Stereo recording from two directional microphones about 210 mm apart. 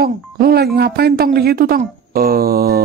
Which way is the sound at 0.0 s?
45° right (ahead or behind).